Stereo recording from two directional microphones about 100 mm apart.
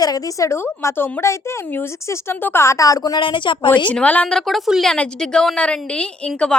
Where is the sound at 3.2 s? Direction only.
55° left (ahead or behind).